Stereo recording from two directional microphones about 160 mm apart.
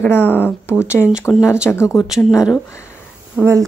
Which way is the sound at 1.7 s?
15° left (ahead or behind).